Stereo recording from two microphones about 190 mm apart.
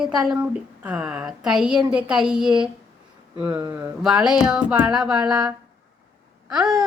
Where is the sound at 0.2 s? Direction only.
5° right (ahead or behind).